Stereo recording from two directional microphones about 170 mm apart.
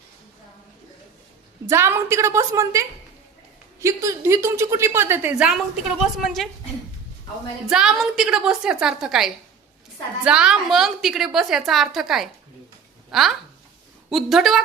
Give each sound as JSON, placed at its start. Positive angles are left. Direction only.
{"t": 1.7, "sound": "a woman's voice", "side_deg": -15}
{"t": 7.7, "sound": "a woman's voice", "side_deg": -5}